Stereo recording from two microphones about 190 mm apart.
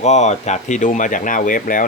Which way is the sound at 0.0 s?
35° left (ahead or behind).